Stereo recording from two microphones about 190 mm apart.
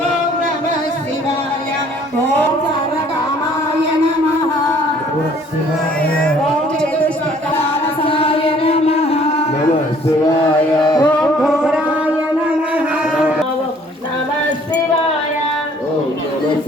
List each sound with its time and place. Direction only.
8.0 s music: 30° left (ahead or behind)
11.0 s music: centre (ahead or behind)
11.6 s a sound: 5° right (ahead or behind)